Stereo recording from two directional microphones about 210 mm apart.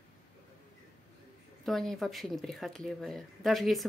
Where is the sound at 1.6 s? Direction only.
Centre (ahead or behind).